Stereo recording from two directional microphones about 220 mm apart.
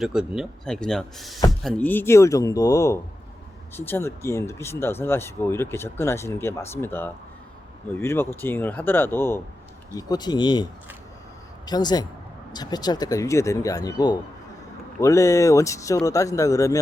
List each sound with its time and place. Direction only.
0.0 s a man's voice: 5° right (ahead or behind); by 16.7 s 15° left (ahead or behind)